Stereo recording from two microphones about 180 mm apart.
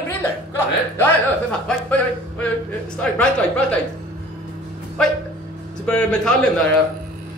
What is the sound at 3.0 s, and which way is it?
Speech, 5° left (ahead or behind).